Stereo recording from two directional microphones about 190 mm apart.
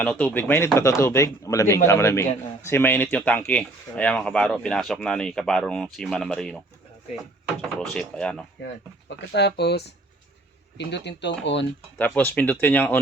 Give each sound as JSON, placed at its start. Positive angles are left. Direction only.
{"t": 0.0, "sound": "speech", "side_deg": 5}
{"t": 7.8, "sound": "speech", "side_deg": 5}
{"t": 9.0, "sound": "speech", "side_deg": 65}
{"t": 11.9, "sound": "speech", "side_deg": 10}